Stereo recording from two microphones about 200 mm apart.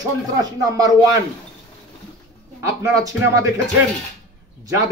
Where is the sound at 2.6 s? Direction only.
15° right (ahead or behind).